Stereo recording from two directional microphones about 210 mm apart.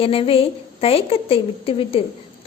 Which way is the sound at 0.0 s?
25° left (ahead or behind).